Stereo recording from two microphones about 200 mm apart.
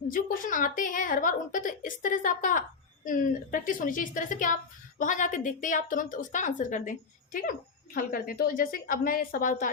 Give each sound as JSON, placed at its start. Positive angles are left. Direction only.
{"t": 0.1, "sound": "a woman's voice", "side_deg": 40}
{"t": 7.9, "sound": "a woman's voice", "side_deg": 45}